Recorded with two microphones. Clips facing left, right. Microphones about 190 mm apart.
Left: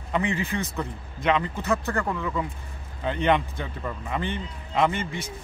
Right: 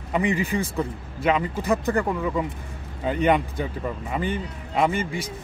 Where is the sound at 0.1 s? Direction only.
10° right (ahead or behind).